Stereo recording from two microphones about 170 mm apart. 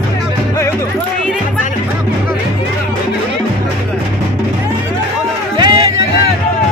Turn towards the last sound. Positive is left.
turn(degrees=-25)  # may be behind; listen again after turning